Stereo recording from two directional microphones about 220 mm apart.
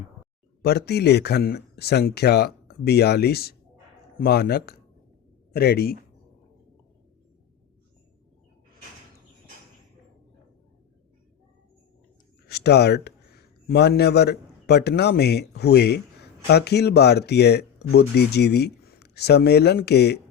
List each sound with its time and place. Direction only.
0.6 s speech: 45° left (ahead or behind)
12.5 s speech: 50° left (ahead or behind)